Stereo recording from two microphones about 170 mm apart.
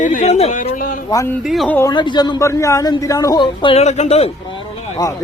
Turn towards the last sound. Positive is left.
turn(degrees=20)  # may be behind; listen again after turning